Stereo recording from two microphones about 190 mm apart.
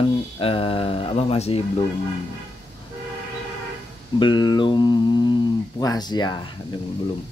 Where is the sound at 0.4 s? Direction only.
30° left (ahead or behind).